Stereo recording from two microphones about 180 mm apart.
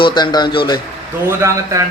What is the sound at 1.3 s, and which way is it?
Speech, 15° right (ahead or behind).